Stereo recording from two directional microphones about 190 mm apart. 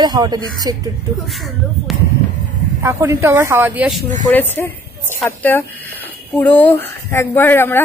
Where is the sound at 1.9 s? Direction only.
Centre (ahead or behind).